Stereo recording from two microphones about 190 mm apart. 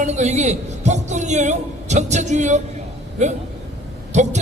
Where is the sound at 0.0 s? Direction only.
35° right (ahead or behind).